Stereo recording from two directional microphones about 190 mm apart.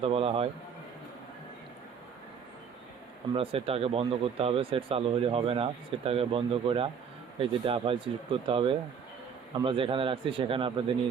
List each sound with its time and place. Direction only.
0.0 s a man's voice: 30° right (ahead or behind)
3.3 s speech: 30° right (ahead or behind)